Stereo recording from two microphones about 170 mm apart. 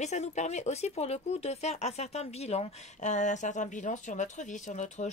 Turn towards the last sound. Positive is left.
turn(degrees=45)  # may be behind; listen again after turning